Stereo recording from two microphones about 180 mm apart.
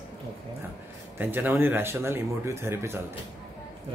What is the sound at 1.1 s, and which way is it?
Speech, 10° right (ahead or behind).